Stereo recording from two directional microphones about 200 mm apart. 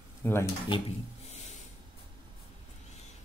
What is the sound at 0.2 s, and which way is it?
Speech, 10° left (ahead or behind).